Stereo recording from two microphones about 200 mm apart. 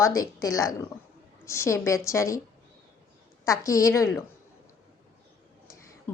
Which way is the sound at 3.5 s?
15° left (ahead or behind).